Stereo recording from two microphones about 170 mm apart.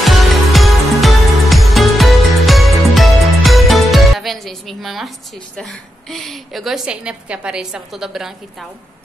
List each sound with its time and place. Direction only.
0.0 s music: centre (ahead or behind)
5.6 s a woman's voice: centre (ahead or behind)